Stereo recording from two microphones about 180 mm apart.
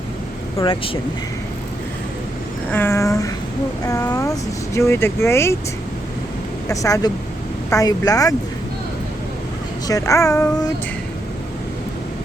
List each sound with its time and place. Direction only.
0.6 s speech: 30° left (ahead or behind)
2.7 s a sound: 15° left (ahead or behind)
3.8 s speech: 15° left (ahead or behind)
6.7 s speech: 20° left (ahead or behind)
9.8 s speech: 20° left (ahead or behind)